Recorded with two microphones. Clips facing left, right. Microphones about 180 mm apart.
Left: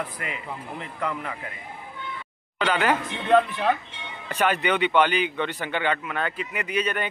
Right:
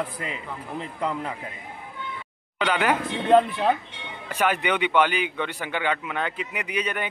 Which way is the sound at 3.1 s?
35° right (ahead or behind).